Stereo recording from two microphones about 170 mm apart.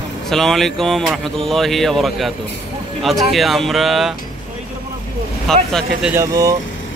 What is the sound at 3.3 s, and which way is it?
Speech, centre (ahead or behind).